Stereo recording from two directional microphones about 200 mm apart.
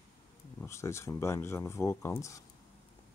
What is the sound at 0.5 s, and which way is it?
Speech, 15° left (ahead or behind).